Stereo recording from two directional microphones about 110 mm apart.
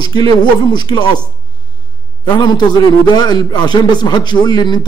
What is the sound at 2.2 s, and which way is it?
A man's voice, 40° left (ahead or behind).